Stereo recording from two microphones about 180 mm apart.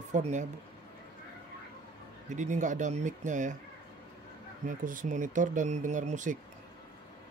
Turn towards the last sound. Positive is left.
turn(degrees=-45)  # may be behind; listen again after turning